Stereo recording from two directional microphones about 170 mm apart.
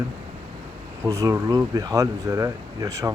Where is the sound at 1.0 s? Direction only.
20° right (ahead or behind).